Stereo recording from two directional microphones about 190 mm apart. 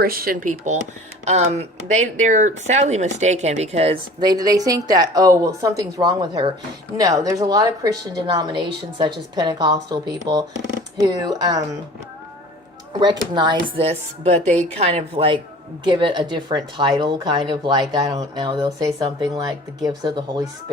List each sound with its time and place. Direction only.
0.0 s speech: 50° right (ahead or behind); by 11.6 s 20° right (ahead or behind)
12.9 s speech: 25° right (ahead or behind)